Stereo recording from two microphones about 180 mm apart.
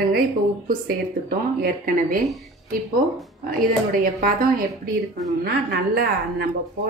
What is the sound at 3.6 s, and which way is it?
A woman's voice, 55° right (ahead or behind).